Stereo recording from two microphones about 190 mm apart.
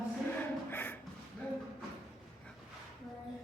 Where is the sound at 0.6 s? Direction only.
10° left (ahead or behind).